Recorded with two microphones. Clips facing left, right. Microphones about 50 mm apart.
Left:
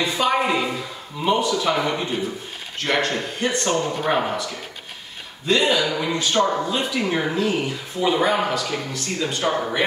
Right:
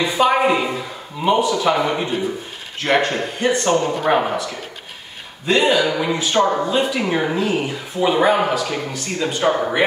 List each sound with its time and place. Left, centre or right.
0.0 s speech: centre
3.8 s speech: right
4.1 s speech: centre